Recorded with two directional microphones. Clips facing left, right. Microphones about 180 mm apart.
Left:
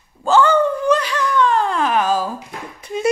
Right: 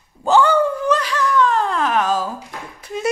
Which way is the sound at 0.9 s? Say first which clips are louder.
Left 1 dB; centre (ahead or behind).